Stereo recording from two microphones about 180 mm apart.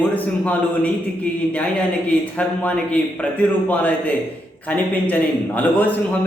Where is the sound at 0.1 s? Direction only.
10° left (ahead or behind).